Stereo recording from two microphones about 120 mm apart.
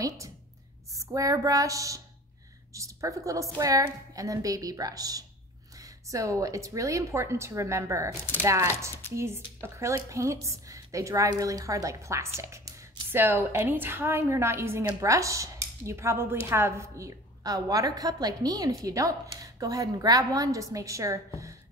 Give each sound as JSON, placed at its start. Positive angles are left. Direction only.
{"t": 0.9, "sound": "a woman's voice", "side_deg": -30}